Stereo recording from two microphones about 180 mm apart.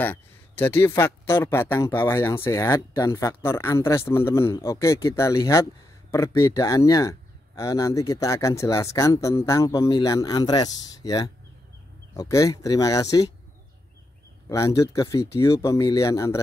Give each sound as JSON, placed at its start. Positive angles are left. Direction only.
{"t": 0.0, "sound": "a man's voice", "side_deg": 10}
{"t": 14.5, "sound": "speech", "side_deg": 20}